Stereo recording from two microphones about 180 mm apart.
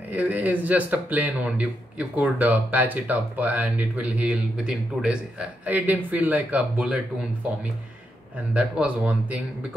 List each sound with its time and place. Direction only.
0.1 s speech: 10° right (ahead or behind)
8.5 s speech: 5° right (ahead or behind)